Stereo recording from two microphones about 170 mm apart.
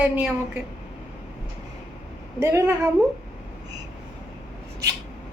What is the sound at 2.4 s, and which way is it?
Speech, 15° right (ahead or behind).